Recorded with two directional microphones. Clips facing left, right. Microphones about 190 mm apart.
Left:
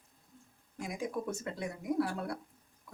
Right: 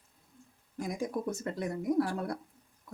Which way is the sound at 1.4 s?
40° right (ahead or behind).